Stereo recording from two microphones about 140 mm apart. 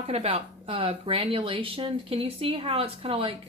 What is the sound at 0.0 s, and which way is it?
Speech, 45° right (ahead or behind).